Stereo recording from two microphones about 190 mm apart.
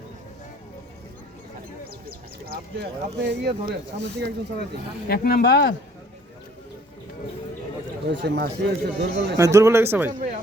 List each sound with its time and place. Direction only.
1.9 s speech: 55° right (ahead or behind)
5.0 s speech: 55° left (ahead or behind)
8.2 s speech: 60° right (ahead or behind)
9.4 s speech: 15° right (ahead or behind)